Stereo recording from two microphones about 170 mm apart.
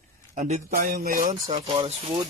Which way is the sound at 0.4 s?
45° right (ahead or behind).